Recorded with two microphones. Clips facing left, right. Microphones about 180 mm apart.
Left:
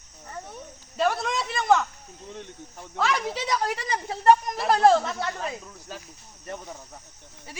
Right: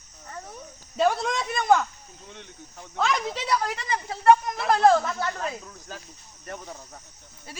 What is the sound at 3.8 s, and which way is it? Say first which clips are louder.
Speech: even; 35° left (ahead or behind).